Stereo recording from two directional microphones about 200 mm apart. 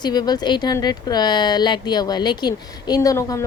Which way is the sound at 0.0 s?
20° left (ahead or behind).